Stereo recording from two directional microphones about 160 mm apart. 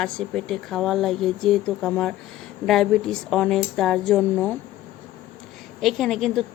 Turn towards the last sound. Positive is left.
turn(degrees=0)  # may be behind; listen again after turning